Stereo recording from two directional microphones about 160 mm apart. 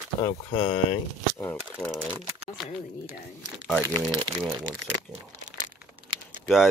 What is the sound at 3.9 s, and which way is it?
Speech, 30° right (ahead or behind).